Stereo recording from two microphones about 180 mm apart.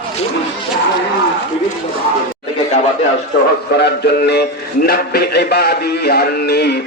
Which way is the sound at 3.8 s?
65° left (ahead or behind).